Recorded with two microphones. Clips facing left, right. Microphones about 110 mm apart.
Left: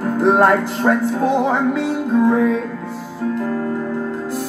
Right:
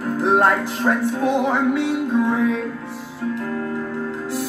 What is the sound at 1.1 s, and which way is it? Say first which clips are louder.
Music: left 2 dB; 35° left (ahead or behind).